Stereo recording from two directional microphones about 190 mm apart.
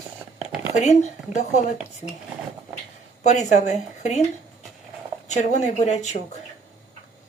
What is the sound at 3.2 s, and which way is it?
Speech, 40° left (ahead or behind).